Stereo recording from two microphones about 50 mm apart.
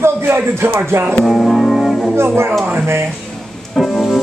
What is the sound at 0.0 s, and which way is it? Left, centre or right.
A man's voice, right.